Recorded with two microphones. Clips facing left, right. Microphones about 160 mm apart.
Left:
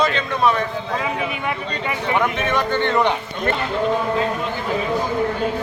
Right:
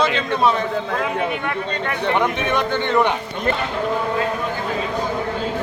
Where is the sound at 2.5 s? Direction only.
15° right (ahead or behind).